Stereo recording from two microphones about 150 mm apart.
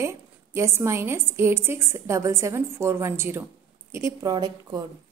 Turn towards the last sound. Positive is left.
turn(degrees=-25)  # may be behind; listen again after turning